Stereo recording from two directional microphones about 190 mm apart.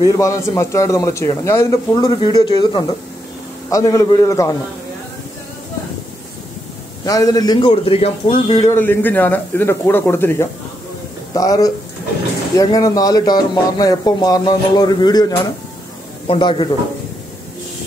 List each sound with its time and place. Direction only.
0.0 s a man's voice: 15° left (ahead or behind)
7.1 s a man's voice: 20° left (ahead or behind)